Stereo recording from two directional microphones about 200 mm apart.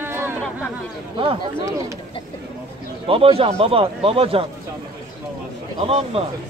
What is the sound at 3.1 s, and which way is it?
A man's voice, 30° right (ahead or behind).